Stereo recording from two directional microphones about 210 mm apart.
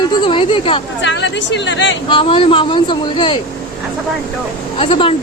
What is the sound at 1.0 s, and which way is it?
Speech, 60° left (ahead or behind).